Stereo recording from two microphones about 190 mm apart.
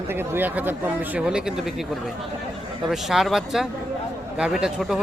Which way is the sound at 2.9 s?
Centre (ahead or behind).